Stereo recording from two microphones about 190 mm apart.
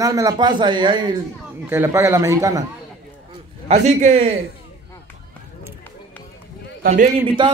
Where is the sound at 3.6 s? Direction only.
35° right (ahead or behind).